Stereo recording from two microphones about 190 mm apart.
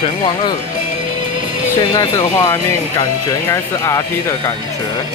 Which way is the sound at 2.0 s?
15° left (ahead or behind).